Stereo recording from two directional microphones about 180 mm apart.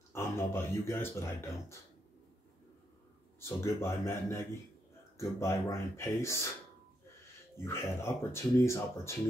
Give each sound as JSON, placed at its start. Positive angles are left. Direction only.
{"t": 0.1, "sound": "speech", "side_deg": 15}
{"t": 3.3, "sound": "speech", "side_deg": 15}
{"t": 7.5, "sound": "speech", "side_deg": 15}